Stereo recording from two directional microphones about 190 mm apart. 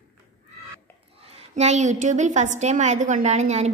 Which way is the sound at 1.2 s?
30° right (ahead or behind).